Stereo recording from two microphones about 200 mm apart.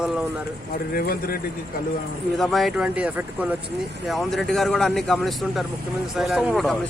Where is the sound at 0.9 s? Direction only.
45° left (ahead or behind).